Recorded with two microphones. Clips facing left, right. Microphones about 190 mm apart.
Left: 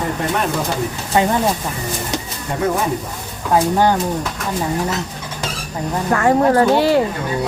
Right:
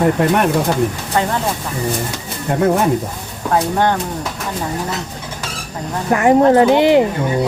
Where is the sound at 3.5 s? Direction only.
5° left (ahead or behind).